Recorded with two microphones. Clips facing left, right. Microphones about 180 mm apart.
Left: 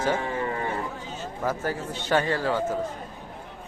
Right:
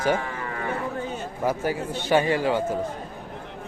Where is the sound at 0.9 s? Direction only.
60° right (ahead or behind).